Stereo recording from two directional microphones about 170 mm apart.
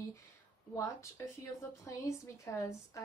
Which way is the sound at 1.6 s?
20° left (ahead or behind).